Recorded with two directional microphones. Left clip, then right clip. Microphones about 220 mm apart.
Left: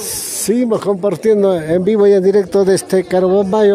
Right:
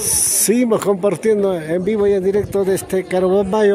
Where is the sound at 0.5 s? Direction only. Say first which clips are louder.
Left 1 dB; 10° left (ahead or behind).